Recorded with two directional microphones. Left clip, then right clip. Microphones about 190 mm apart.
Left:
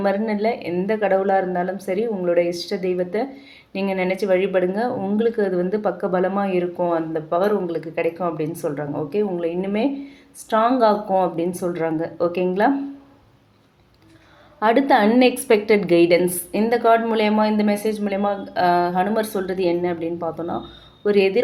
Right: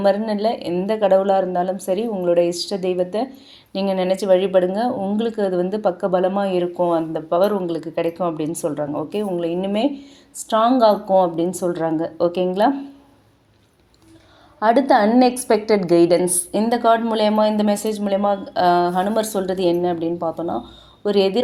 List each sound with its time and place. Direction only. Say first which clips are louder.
0.0 s speech: right 3 dB; 30° right (ahead or behind)
14.6 s a woman's voice: right 1 dB; 15° right (ahead or behind)
15.5 s a woman's voice: left 1 dB; 5° left (ahead or behind)
15.8 s a woman's voice: right 1 dB; 15° right (ahead or behind)